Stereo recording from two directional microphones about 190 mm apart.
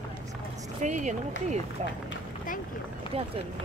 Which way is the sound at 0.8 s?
40° right (ahead or behind).